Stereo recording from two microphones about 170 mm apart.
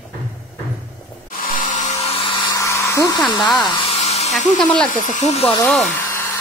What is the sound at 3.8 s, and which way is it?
Hair dryer, 40° left (ahead or behind).